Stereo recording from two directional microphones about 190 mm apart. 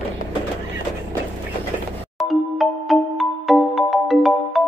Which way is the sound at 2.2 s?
Centre (ahead or behind).